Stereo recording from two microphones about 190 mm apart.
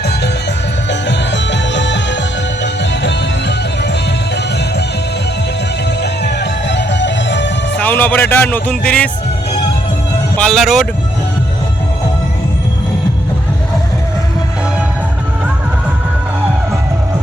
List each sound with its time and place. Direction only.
0.9 s music: 70° left (ahead or behind)
6.0 s music: 65° left (ahead or behind)
7.8 s speech: 10° left (ahead or behind)
10.3 s speech: 5° left (ahead or behind)